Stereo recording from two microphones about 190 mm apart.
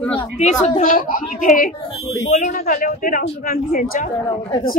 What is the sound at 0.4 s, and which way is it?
Speech, 40° left (ahead or behind).